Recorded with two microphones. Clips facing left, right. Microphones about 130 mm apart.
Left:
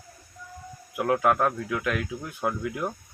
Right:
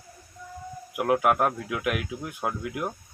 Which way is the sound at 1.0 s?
10° right (ahead or behind).